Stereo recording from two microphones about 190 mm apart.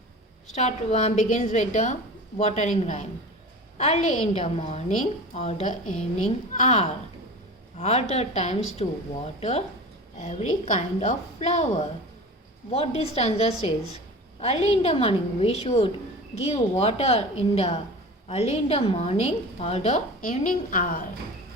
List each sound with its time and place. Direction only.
0.5 s a woman's voice: 35° left (ahead or behind)